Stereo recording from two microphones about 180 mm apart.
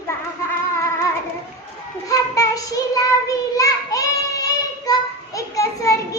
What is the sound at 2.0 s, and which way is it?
Child singing, 20° left (ahead or behind).